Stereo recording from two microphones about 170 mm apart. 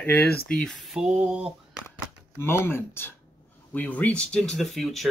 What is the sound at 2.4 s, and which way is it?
Speech, 15° left (ahead or behind).